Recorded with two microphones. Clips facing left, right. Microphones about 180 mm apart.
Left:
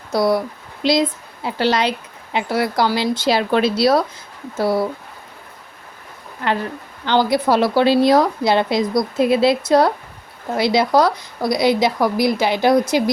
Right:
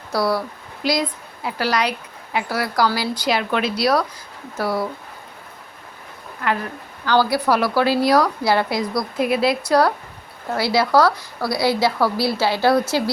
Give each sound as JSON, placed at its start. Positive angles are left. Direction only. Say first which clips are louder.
{"t": 0.1, "sound": "a woman's voice", "louder": "left 4 dB", "side_deg": 20}
{"t": 6.4, "sound": "speech", "louder": "left 2 dB", "side_deg": 30}